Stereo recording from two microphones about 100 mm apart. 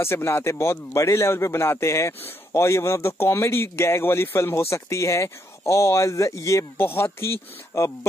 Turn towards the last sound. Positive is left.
turn(degrees=25)  # may be behind; listen again after turning